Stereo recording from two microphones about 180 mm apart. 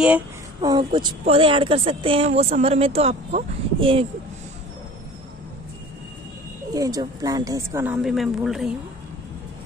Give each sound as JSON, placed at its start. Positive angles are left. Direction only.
{"t": 0.6, "sound": "a woman's voice", "side_deg": -25}
{"t": 6.7, "sound": "a woman's voice", "side_deg": -20}